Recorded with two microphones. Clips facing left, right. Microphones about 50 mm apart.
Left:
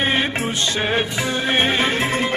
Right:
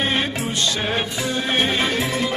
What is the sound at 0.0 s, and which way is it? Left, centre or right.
Music, left.